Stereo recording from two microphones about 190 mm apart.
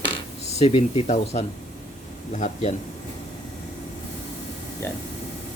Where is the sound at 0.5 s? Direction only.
30° left (ahead or behind).